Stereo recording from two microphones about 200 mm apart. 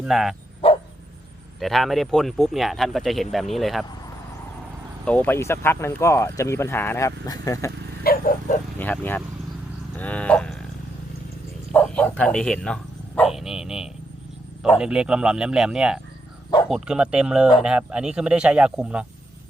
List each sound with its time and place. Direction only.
0.0 s speech: centre (ahead or behind)
1.5 s speech: centre (ahead or behind)
5.0 s speech: 10° left (ahead or behind)
8.0 s dog: 45° left (ahead or behind)
8.8 s speech: 10° left (ahead or behind)
10.0 s a sound: 5° left (ahead or behind)
11.7 s bow-wow: 5° left (ahead or behind)
14.6 s speech: 5° right (ahead or behind)